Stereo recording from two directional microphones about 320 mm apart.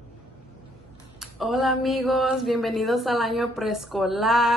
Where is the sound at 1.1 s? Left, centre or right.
Centre.